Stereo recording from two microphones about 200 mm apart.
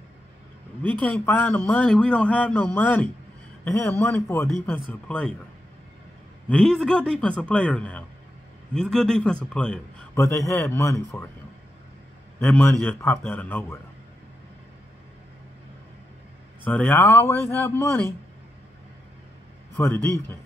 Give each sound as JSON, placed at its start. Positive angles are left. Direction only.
{"t": 0.8, "sound": "a man's voice", "side_deg": 10}
{"t": 6.5, "sound": "a man's voice", "side_deg": 5}
{"t": 12.4, "sound": "a man's voice", "side_deg": 10}
{"t": 16.6, "sound": "a man's voice", "side_deg": 10}
{"t": 19.8, "sound": "a man's voice", "side_deg": 10}